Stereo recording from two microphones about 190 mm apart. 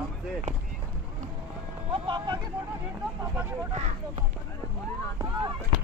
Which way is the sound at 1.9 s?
25° right (ahead or behind).